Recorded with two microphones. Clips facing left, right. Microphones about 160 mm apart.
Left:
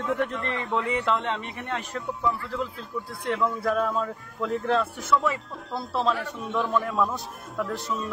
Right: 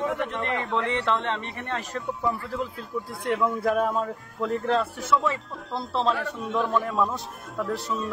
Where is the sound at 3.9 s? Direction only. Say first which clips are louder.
Right 1 dB; centre (ahead or behind).